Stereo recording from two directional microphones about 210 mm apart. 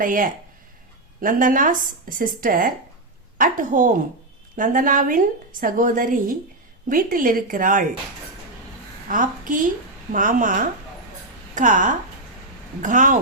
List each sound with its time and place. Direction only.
0.0 s a woman's voice: 40° right (ahead or behind)
9.0 s a woman's voice: 40° right (ahead or behind)